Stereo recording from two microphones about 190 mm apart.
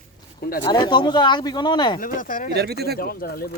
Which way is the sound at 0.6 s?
25° left (ahead or behind).